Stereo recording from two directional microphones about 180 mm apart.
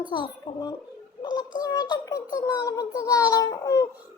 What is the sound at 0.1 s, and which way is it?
A child's voice, 25° left (ahead or behind).